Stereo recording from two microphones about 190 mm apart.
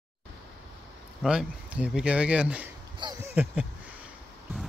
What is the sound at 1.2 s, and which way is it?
Speech, 5° right (ahead or behind).